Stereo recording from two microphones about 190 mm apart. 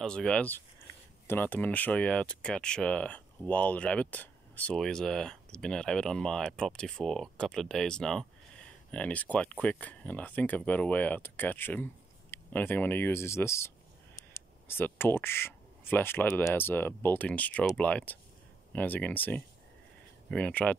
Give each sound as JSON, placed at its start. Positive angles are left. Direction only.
{"t": 0.0, "sound": "speech", "side_deg": 5}